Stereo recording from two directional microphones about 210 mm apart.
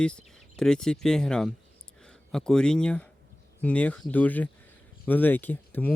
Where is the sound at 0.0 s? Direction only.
5° left (ahead or behind).